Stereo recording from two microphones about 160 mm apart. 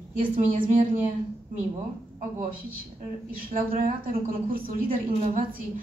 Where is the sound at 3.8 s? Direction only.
60° right (ahead or behind).